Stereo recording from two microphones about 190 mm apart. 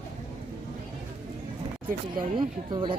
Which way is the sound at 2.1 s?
25° right (ahead or behind).